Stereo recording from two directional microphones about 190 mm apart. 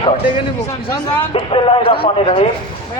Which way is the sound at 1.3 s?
25° left (ahead or behind).